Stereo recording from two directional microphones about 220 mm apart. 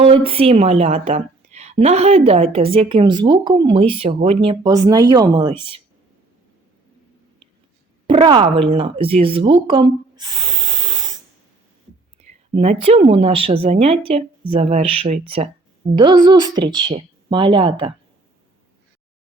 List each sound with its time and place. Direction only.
0.0 s a woman's voice: 25° right (ahead or behind)
8.0 s speech: 25° right (ahead or behind)
12.5 s a woman's voice: 30° right (ahead or behind)